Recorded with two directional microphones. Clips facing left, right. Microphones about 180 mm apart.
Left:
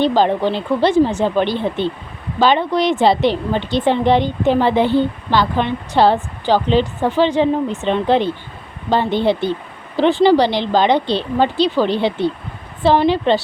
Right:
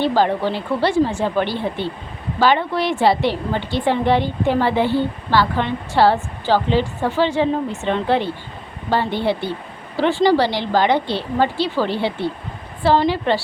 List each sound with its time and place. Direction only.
0.0 s a woman's voice: 20° left (ahead or behind)